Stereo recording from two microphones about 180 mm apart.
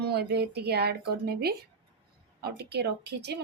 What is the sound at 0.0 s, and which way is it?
Speech, 65° right (ahead or behind).